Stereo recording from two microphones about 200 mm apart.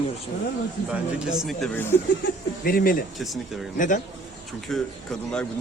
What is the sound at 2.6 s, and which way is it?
Speech, 45° left (ahead or behind).